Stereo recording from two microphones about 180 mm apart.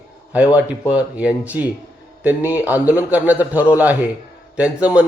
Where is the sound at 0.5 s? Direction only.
10° right (ahead or behind).